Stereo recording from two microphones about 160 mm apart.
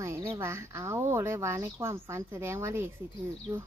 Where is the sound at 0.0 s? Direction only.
15° right (ahead or behind).